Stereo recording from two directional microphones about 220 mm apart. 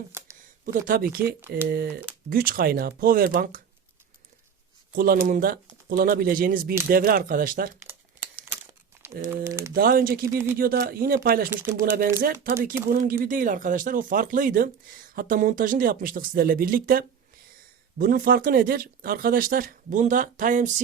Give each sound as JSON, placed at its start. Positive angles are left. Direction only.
{"t": 0.1, "sound": "speech", "side_deg": -10}
{"t": 0.6, "sound": "speech", "side_deg": -40}
{"t": 1.4, "sound": "speech", "side_deg": -10}
{"t": 1.7, "sound": "speech", "side_deg": -45}
{"t": 4.9, "sound": "speech", "side_deg": -40}
{"t": 9.3, "sound": "speech", "side_deg": -10}
{"t": 9.7, "sound": "speech", "side_deg": -40}
{"t": 10.2, "sound": "speech", "side_deg": -10}
{"t": 10.6, "sound": "speech", "side_deg": -40}
{"t": 11.5, "sound": "speech", "side_deg": -10}
{"t": 12.9, "sound": "speech", "side_deg": -40}